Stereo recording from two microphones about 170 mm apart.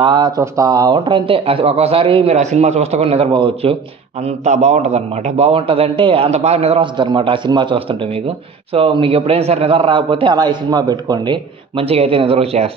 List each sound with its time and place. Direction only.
0.0 s a man's voice: 25° right (ahead or behind)
2.3 s a man's voice: 40° right (ahead or behind)
4.2 s a man's voice: 40° right (ahead or behind)